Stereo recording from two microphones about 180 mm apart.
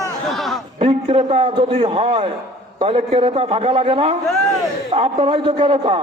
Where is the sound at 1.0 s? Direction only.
30° right (ahead or behind).